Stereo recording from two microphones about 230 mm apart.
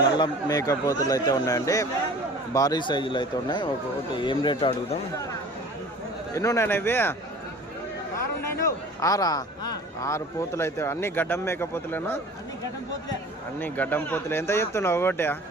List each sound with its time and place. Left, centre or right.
0.0 s a man's voice: centre
6.3 s a man's voice: centre
8.4 s a man's voice: centre
13.6 s a man's voice: centre